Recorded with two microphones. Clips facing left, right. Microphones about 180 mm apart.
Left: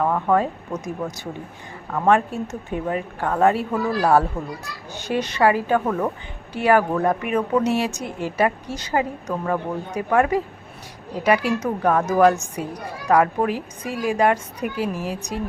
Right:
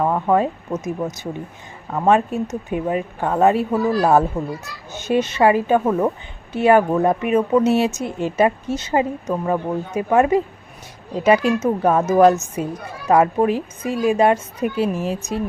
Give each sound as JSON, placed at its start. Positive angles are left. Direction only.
{"t": 0.0, "sound": "a woman's voice", "side_deg": -15}